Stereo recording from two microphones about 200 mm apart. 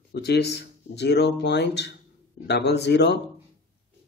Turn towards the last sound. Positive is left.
turn(degrees=60)  # may be behind; listen again after turning